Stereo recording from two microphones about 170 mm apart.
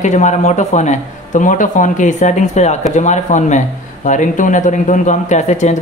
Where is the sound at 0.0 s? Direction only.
45° left (ahead or behind).